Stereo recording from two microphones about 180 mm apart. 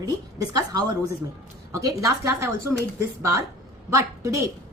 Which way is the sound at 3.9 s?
15° right (ahead or behind).